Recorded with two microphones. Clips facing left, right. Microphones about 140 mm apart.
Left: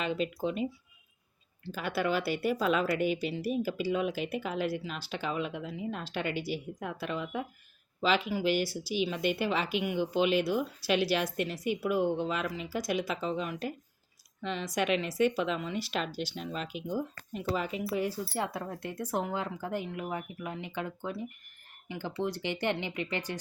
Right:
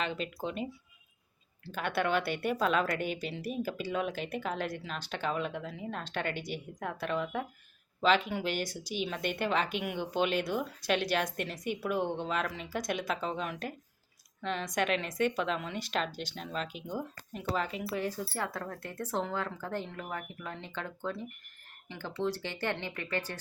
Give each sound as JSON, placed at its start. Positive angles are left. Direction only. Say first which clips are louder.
{"t": 0.0, "sound": "speech", "louder": "left 4 dB", "side_deg": 5}
{"t": 1.6, "sound": "speech", "louder": "even", "side_deg": 5}